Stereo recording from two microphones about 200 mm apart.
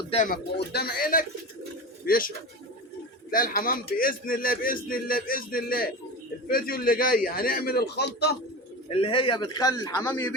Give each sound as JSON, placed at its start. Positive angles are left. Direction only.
{"t": 0.1, "sound": "speech", "side_deg": 35}
{"t": 0.5, "sound": "a man's voice", "side_deg": 55}
{"t": 8.9, "sound": "a man's voice", "side_deg": 30}